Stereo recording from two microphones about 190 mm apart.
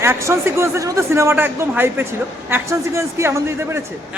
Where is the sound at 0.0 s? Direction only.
15° right (ahead or behind).